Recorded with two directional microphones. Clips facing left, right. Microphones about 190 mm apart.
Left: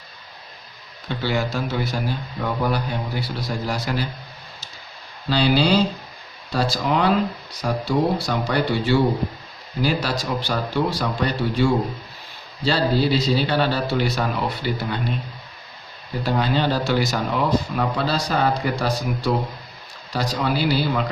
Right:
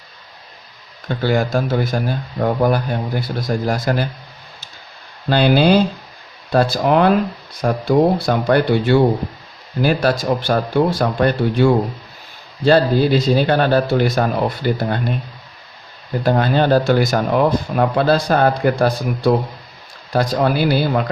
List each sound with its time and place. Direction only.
1.0 s speech: 50° right (ahead or behind)
5.3 s speech: 55° right (ahead or behind)
16.2 s speech: 50° right (ahead or behind)